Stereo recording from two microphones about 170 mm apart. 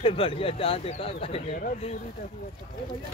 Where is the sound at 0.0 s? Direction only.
35° left (ahead or behind).